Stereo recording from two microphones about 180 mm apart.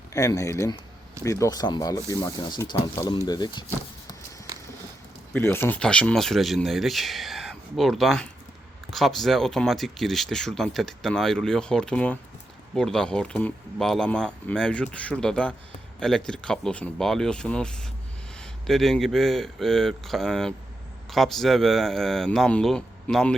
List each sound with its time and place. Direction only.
0.1 s speech: 20° left (ahead or behind)
5.3 s speech: 10° left (ahead or behind)